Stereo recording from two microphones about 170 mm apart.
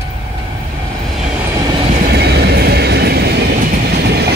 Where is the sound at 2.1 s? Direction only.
75° right (ahead or behind).